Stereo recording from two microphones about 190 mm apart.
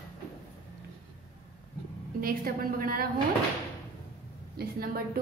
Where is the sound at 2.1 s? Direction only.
50° right (ahead or behind).